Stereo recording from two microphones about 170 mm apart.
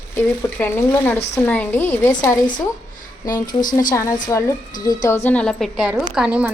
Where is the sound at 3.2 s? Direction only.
25° left (ahead or behind).